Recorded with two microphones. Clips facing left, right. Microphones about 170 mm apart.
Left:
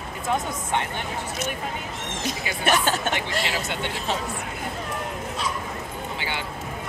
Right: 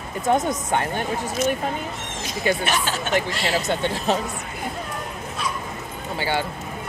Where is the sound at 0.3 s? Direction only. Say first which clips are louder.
Right 5 dB; 40° right (ahead or behind).